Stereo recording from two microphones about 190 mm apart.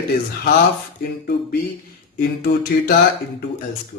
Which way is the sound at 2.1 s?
55° left (ahead or behind).